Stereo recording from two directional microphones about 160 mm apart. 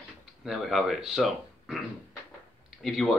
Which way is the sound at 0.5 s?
Centre (ahead or behind).